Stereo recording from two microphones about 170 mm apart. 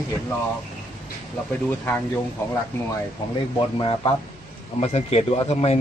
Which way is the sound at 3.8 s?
30° left (ahead or behind).